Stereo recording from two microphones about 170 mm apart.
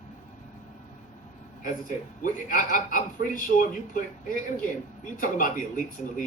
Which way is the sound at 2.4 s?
55° left (ahead or behind).